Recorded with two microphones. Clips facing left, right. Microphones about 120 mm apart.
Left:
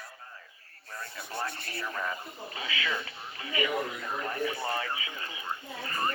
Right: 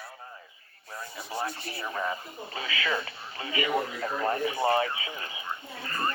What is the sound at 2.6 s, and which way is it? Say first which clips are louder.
Speech: right 4 dB; 45° right (ahead or behind).